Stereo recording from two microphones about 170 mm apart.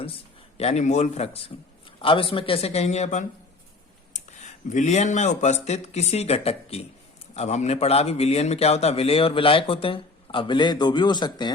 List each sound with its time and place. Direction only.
0.0 s a man's voice: 35° left (ahead or behind)